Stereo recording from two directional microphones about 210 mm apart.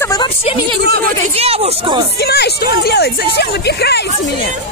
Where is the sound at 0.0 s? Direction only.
15° left (ahead or behind).